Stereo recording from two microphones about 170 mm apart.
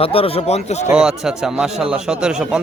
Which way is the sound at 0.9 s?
5° right (ahead or behind).